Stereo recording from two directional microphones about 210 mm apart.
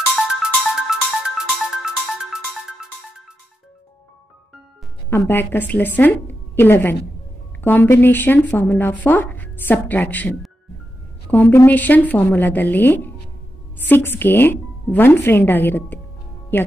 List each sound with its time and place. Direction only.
0.1 s music: 5° right (ahead or behind)
5.2 s speech: 10° left (ahead or behind)